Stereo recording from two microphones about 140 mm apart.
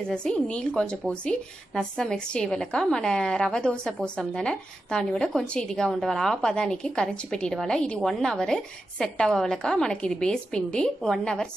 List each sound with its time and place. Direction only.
0.1 s a woman's voice: 5° left (ahead or behind)